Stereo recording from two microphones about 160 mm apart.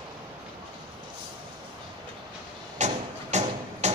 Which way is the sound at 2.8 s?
45° right (ahead or behind).